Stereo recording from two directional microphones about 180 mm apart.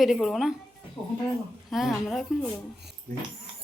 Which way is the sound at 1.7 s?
Centre (ahead or behind).